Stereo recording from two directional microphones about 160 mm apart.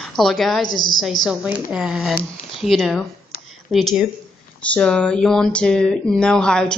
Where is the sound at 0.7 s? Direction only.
25° left (ahead or behind).